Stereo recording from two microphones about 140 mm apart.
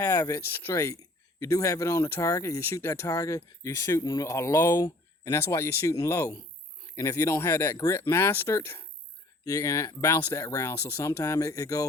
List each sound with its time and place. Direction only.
0.0 s speech: 20° left (ahead or behind)